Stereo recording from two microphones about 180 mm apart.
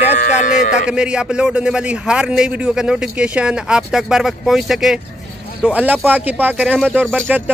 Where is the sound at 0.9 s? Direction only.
5° right (ahead or behind).